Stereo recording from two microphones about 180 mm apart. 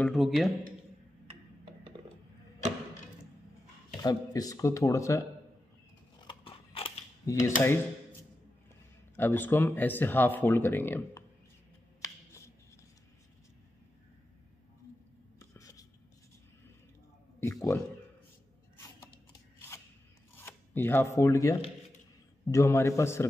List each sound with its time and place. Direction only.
0.0 s speech: centre (ahead or behind)
1.2 s tick-tock: 30° right (ahead or behind)
4.0 s speech: 20° left (ahead or behind)
6.1 s horse: 30° left (ahead or behind)
7.2 s speech: 15° left (ahead or behind)
7.6 s a sound: 10° left (ahead or behind)
9.1 s speech: 10° left (ahead or behind)
15.5 s a sound: 20° left (ahead or behind)
17.4 s speech: 15° left (ahead or behind)
20.3 s speech: 10° left (ahead or behind)